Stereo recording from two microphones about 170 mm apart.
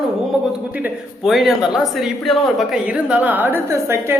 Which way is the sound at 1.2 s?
Centre (ahead or behind).